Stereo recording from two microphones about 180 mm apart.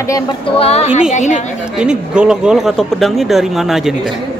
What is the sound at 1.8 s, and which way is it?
Speech, 5° right (ahead or behind).